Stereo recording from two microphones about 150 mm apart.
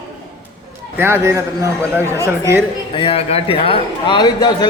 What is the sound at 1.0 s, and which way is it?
A man's voice, 20° right (ahead or behind).